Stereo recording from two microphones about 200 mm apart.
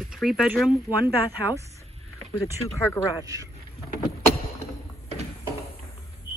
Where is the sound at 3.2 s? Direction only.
15° right (ahead or behind).